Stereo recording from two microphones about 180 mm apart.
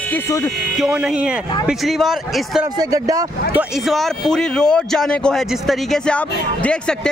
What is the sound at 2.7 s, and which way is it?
Speech, 20° right (ahead or behind).